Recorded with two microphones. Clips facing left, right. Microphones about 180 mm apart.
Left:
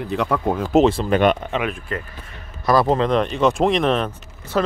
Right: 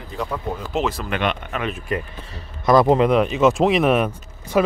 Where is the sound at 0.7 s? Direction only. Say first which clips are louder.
Left 9 dB; 30° left (ahead or behind).